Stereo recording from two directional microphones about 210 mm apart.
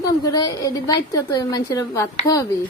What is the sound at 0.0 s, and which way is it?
A woman's voice, 20° left (ahead or behind).